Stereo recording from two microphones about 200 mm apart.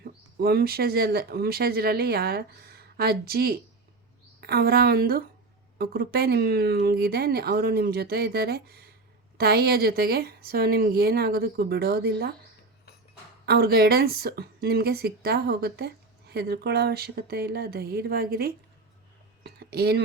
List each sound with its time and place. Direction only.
0.0 s speech: 50° right (ahead or behind)
13.4 s speech: 50° right (ahead or behind)
19.4 s a sound: 55° right (ahead or behind)